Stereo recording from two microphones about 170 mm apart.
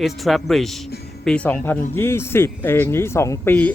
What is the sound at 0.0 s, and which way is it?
Speech, centre (ahead or behind).